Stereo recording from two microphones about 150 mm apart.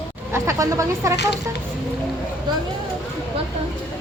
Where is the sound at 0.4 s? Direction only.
20° right (ahead or behind).